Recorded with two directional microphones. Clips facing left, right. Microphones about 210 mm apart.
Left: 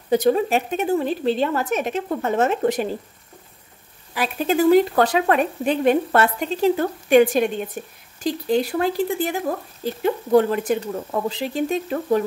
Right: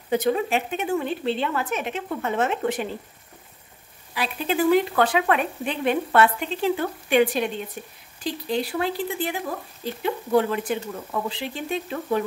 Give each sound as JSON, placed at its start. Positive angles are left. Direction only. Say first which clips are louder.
{"t": 0.1, "sound": "speech", "louder": "left 4 dB", "side_deg": 35}
{"t": 4.1, "sound": "speech", "louder": "left 4 dB", "side_deg": 45}